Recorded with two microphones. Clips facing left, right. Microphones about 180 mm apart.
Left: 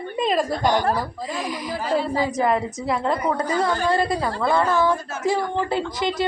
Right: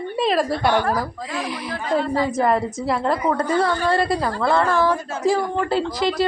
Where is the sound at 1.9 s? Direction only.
5° left (ahead or behind).